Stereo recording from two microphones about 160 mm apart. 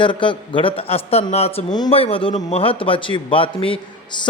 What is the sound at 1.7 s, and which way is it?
A man's voice, 30° left (ahead or behind).